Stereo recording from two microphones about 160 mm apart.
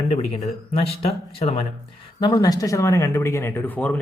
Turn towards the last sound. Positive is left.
turn(degrees=10)  # may be behind; listen again after turning